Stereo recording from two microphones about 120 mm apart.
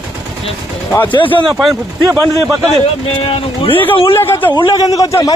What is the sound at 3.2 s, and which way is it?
Speech, 50° left (ahead or behind).